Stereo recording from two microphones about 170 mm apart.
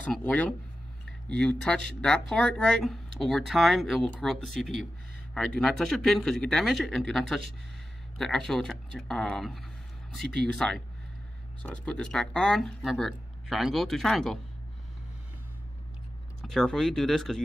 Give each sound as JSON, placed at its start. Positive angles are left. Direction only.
{"t": 0.0, "sound": "speech", "side_deg": 10}
{"t": 1.6, "sound": "speech", "side_deg": 5}
{"t": 16.3, "sound": "speech", "side_deg": 0}